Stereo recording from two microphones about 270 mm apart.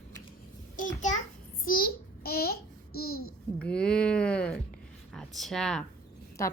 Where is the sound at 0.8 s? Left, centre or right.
Left.